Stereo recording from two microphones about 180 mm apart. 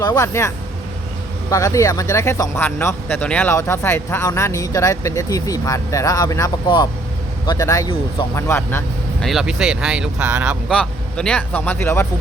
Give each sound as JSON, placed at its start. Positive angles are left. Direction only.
{"t": 0.0, "sound": "a man's voice", "side_deg": 20}
{"t": 9.2, "sound": "speech", "side_deg": 0}
{"t": 10.7, "sound": "speech", "side_deg": 5}